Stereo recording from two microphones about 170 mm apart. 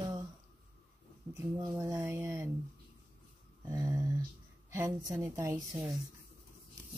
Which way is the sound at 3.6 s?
20° right (ahead or behind).